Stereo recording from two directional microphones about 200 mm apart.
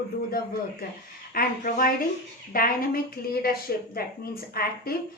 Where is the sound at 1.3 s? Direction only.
45° left (ahead or behind).